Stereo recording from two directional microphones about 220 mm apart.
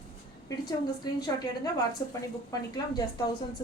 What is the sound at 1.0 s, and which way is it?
A woman's voice, 15° left (ahead or behind).